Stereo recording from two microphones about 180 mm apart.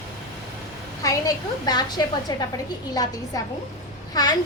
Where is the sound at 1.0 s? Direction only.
20° left (ahead or behind).